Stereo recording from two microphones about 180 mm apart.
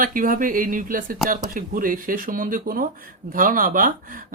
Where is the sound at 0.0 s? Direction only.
50° right (ahead or behind).